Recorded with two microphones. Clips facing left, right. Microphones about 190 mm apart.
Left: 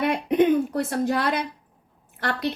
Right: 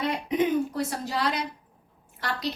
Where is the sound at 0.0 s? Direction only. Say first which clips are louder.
Left 5 dB; 60° left (ahead or behind).